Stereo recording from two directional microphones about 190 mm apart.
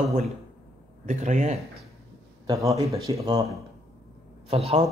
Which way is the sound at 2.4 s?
15° right (ahead or behind).